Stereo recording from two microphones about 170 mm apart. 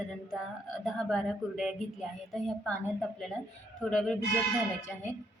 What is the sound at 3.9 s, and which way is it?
Speech, centre (ahead or behind).